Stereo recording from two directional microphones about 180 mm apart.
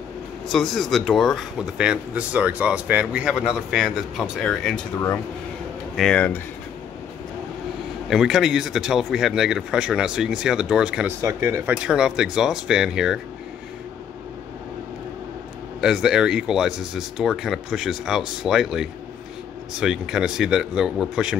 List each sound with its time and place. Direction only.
0.5 s speech: centre (ahead or behind)
8.1 s speech: centre (ahead or behind)
11.1 s speech: 15° right (ahead or behind)
11.7 s speech: 5° right (ahead or behind)
15.8 s speech: 5° right (ahead or behind)